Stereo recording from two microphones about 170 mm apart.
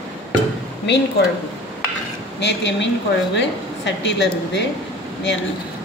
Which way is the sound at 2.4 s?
90° left.